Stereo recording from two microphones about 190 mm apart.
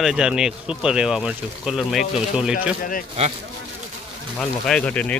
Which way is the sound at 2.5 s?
45° left (ahead or behind).